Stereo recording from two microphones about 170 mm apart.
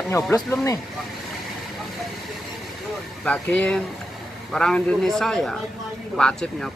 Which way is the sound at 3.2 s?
5° left (ahead or behind).